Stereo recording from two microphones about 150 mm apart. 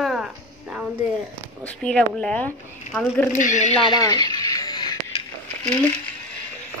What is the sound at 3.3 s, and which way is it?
Speech, 55° left (ahead or behind).